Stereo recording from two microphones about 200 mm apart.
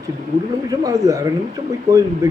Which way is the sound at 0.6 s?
15° right (ahead or behind).